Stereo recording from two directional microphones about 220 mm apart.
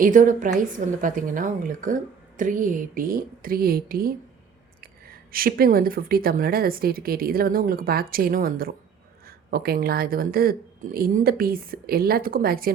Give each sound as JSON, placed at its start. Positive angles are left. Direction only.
{"t": 0.0, "sound": "a woman's voice", "side_deg": -35}